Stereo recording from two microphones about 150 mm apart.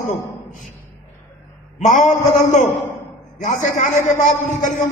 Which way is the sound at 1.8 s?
55° left (ahead or behind).